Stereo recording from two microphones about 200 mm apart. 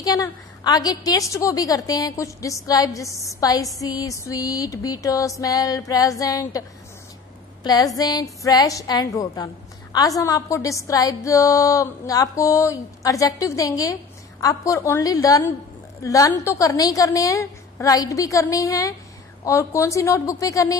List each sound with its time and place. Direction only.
0.0 s a woman's voice: 20° left (ahead or behind)
7.6 s a woman's voice: 20° left (ahead or behind)